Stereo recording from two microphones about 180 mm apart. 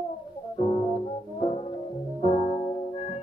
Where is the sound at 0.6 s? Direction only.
30° left (ahead or behind).